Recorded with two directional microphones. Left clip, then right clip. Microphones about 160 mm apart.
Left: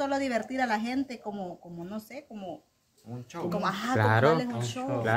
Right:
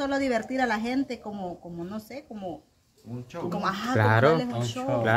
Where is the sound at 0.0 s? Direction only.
10° left (ahead or behind).